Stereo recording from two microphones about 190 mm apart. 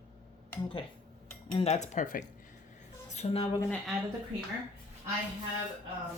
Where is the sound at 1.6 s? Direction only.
35° left (ahead or behind).